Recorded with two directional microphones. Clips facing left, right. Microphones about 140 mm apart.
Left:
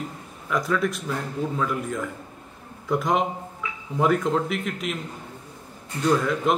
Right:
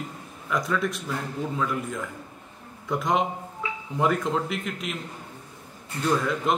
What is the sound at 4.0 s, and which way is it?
Speech, centre (ahead or behind).